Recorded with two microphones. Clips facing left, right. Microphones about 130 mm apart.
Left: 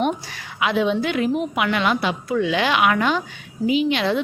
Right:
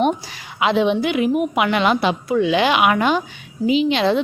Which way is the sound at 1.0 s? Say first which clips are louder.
Right 3 dB; 10° right (ahead or behind).